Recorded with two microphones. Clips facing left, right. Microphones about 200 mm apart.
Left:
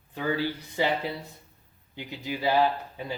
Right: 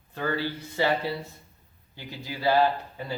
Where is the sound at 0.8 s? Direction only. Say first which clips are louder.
Right 2 dB; 15° left (ahead or behind).